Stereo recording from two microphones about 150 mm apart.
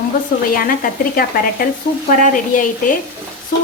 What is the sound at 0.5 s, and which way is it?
A woman's voice, 70° left (ahead or behind).